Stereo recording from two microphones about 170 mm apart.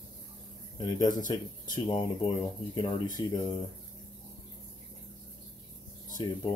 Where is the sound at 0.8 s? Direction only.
20° left (ahead or behind).